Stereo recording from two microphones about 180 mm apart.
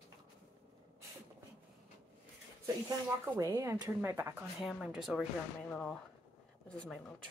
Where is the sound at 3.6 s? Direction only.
15° right (ahead or behind); by 7.0 s 5° left (ahead or behind).